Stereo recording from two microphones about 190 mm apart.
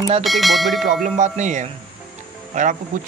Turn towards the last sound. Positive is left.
turn(degrees=-40)  # may be behind; listen again after turning